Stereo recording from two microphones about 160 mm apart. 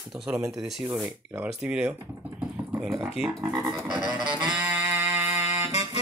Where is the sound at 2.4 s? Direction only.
5° right (ahead or behind).